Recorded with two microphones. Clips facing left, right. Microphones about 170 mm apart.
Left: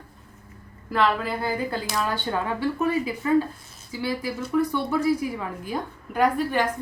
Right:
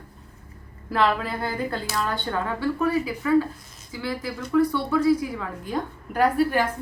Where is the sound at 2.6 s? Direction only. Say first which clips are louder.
Right 2 dB; 20° left (ahead or behind).